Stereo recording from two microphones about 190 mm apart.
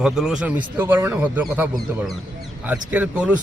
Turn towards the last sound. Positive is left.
turn(degrees=-5)  # may be behind; listen again after turning